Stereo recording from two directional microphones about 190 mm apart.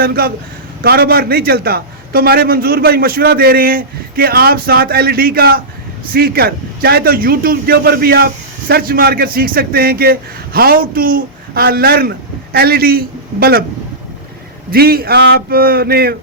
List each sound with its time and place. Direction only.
0.0 s a man's voice: 50° right (ahead or behind)
14.7 s a man's voice: 50° right (ahead or behind)